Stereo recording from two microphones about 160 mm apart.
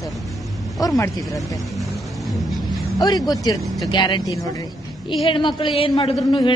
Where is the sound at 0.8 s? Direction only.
20° left (ahead or behind).